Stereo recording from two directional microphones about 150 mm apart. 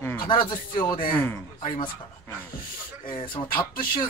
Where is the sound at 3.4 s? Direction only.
75° left (ahead or behind).